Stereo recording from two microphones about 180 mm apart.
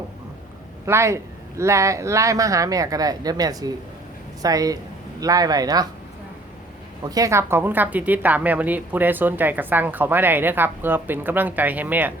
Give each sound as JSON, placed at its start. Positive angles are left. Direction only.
{"t": 0.9, "sound": "a man's voice", "side_deg": -15}
{"t": 7.0, "sound": "speech", "side_deg": -20}